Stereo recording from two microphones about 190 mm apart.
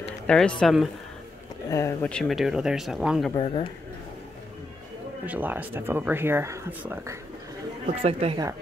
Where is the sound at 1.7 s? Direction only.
15° left (ahead or behind); by 3.3 s centre (ahead or behind).